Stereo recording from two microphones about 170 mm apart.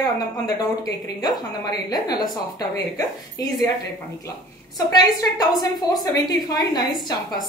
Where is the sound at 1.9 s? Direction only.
25° left (ahead or behind).